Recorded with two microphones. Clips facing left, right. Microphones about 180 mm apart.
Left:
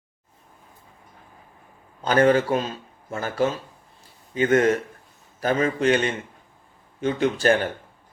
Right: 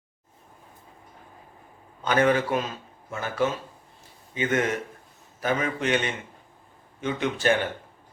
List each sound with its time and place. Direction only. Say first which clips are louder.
2.0 s speech: left 4 dB; 35° left (ahead or behind)
7.0 s speech: left 4 dB; 35° left (ahead or behind)